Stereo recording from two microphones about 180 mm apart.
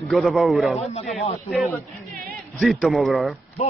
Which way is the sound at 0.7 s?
35° left (ahead or behind).